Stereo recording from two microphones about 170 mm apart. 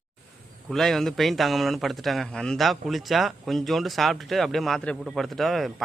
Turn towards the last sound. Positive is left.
turn(degrees=0)  # may be behind; listen again after turning